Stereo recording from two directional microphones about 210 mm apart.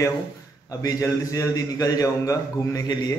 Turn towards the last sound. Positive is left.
turn(degrees=20)  # may be behind; listen again after turning